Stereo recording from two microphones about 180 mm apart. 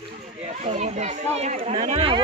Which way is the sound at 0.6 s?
40° right (ahead or behind).